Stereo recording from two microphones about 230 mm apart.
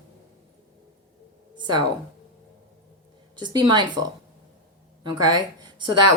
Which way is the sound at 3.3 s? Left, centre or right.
Centre.